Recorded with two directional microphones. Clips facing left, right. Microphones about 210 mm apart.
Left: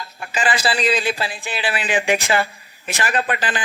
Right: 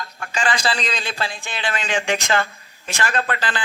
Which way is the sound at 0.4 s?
5° left (ahead or behind).